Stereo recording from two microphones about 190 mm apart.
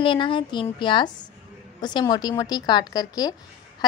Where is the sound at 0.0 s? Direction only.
25° left (ahead or behind).